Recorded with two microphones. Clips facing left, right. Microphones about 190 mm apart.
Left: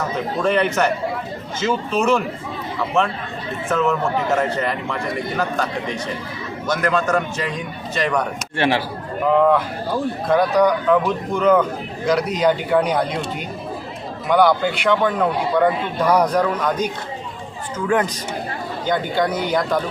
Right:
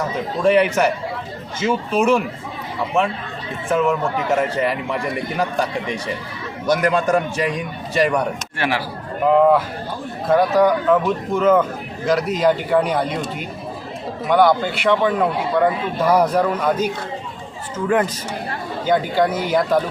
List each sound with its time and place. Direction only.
0.4 s a man's voice: 10° right (ahead or behind)
3.7 s a man's voice: 10° right (ahead or behind)
8.5 s speech: 25° left (ahead or behind)
9.2 s a man's voice: 5° right (ahead or behind)
14.3 s a man's voice: centre (ahead or behind)
18.9 s a man's voice: 5° right (ahead or behind)